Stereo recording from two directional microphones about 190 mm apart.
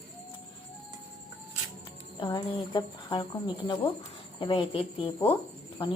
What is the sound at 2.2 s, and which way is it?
Speech, 20° left (ahead or behind).